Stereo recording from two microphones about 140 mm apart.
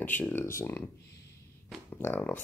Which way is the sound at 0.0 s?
15° left (ahead or behind).